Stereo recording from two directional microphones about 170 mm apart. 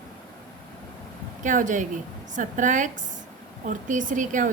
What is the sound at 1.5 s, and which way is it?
A woman's voice, 50° right (ahead or behind).